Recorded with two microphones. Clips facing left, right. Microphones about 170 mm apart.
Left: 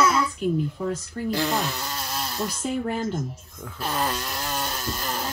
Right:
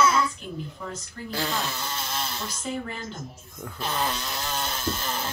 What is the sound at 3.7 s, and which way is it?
Speech, 10° left (ahead or behind).